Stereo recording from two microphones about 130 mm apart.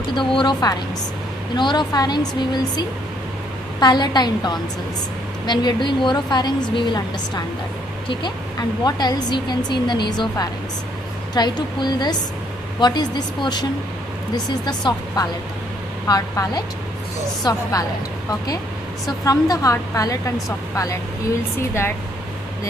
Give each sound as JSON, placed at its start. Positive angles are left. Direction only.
{"t": 0.1, "sound": "a woman's voice", "side_deg": 35}
{"t": 3.8, "sound": "a woman's voice", "side_deg": 35}
{"t": 19.2, "sound": "a woman's voice", "side_deg": 25}